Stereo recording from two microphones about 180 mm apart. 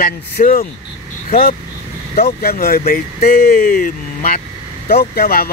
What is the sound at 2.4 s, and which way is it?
Speech, 55° left (ahead or behind).